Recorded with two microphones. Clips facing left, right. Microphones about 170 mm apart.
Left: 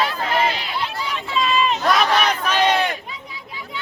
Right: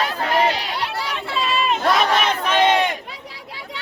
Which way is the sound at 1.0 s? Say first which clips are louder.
Left 1 dB; 70° right (ahead or behind).